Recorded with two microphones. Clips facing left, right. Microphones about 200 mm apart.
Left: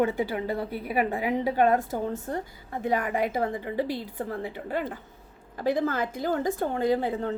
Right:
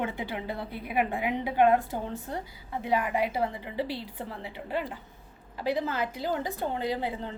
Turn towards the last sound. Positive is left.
turn(degrees=50)  # may be behind; listen again after turning